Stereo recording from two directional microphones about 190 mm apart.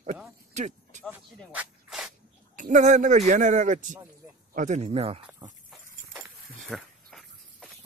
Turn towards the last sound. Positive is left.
turn(degrees=0)  # may be behind; listen again after turning